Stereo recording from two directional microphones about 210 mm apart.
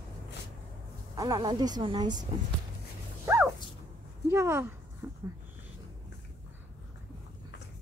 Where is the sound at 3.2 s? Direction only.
10° right (ahead or behind).